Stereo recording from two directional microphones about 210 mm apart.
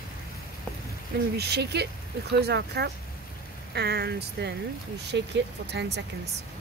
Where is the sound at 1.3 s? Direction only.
50° right (ahead or behind).